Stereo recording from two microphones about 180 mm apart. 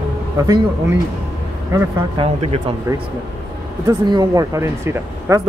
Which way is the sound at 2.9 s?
15° right (ahead or behind).